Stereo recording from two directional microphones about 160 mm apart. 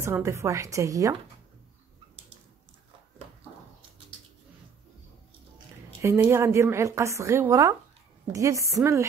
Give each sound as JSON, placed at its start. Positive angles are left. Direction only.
{"t": 0.0, "sound": "a woman's voice", "side_deg": -15}
{"t": 6.0, "sound": "a woman's voice", "side_deg": -15}